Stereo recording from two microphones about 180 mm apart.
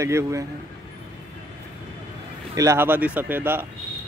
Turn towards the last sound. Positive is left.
turn(degrees=-10)  # may be behind; listen again after turning